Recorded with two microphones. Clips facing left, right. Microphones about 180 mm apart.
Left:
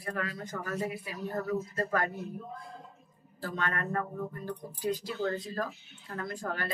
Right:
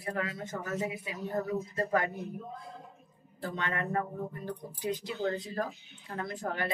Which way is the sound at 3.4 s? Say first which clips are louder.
Even; 20° right (ahead or behind).